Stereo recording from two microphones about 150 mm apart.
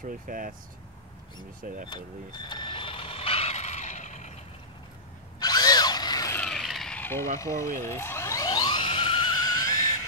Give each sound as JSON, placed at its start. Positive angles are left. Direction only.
{"t": 0.3, "sound": "speech", "side_deg": -65}
{"t": 1.6, "sound": "speech", "side_deg": -65}
{"t": 2.3, "sound": "reversing beeps", "side_deg": 30}
{"t": 5.4, "sound": "a sound", "side_deg": 25}
{"t": 6.4, "sound": "vehicle", "side_deg": 0}
{"t": 7.3, "sound": "a sound", "side_deg": 20}